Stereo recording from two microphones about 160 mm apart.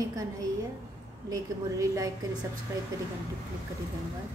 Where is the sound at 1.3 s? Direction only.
20° right (ahead or behind).